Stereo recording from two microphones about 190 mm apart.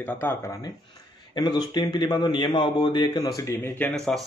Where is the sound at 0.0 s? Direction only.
10° left (ahead or behind).